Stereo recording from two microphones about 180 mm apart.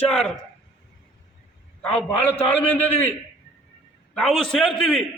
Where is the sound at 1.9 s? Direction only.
35° left (ahead or behind).